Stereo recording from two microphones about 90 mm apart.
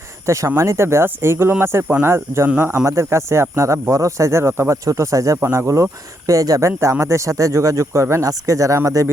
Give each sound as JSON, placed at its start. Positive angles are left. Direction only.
{"t": 0.3, "sound": "speech", "side_deg": -35}
{"t": 6.7, "sound": "speech", "side_deg": -30}